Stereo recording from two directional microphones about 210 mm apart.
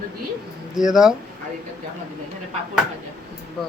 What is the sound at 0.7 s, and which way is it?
Speech, centre (ahead or behind).